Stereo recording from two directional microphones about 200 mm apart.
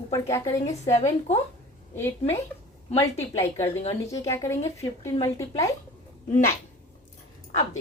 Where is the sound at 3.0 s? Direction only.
15° left (ahead or behind).